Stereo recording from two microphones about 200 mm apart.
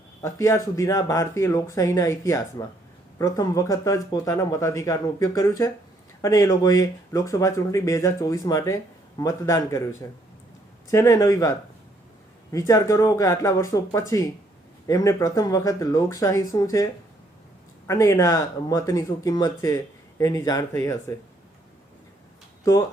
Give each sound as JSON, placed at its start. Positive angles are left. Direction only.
{"t": 0.2, "sound": "speech", "side_deg": 15}